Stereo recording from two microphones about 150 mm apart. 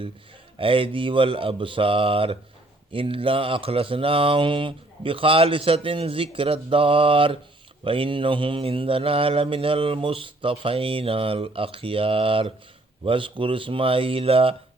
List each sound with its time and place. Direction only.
0.6 s mantra: 35° right (ahead or behind)